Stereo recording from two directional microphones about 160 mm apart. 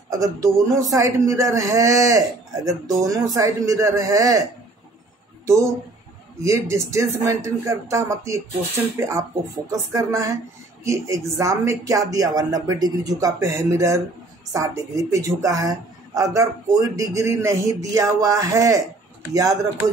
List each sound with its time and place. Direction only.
0.1 s a woman's voice: 20° right (ahead or behind)
6.4 s a woman's voice: 20° right (ahead or behind)